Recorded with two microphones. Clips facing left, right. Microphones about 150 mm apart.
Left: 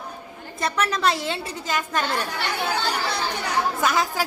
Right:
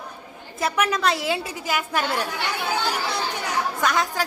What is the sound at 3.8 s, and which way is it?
Speech, 5° left (ahead or behind).